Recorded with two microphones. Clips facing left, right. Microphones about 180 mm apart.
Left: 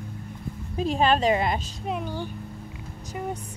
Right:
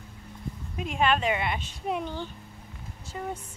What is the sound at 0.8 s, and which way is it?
Speech, 35° left (ahead or behind).